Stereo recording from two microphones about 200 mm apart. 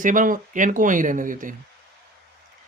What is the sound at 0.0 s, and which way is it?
Speech, 40° right (ahead or behind).